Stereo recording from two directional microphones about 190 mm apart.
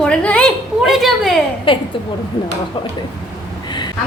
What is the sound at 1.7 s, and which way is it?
Speech, 25° left (ahead or behind).